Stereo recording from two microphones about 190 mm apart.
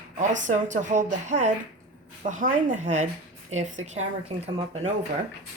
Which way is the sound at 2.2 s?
40° right (ahead or behind).